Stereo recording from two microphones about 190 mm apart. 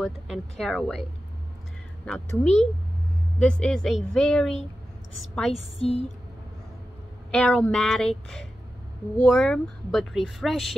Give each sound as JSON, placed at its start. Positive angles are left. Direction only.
{"t": 0.0, "sound": "speech", "side_deg": 0}
{"t": 2.0, "sound": "a woman's voice", "side_deg": 10}
{"t": 5.8, "sound": "a sound", "side_deg": 30}
{"t": 7.2, "sound": "speech", "side_deg": 5}